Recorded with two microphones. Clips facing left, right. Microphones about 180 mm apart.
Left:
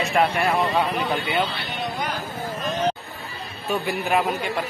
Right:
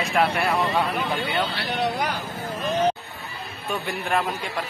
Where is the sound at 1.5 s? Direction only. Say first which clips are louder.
Right 4 dB; 85° right.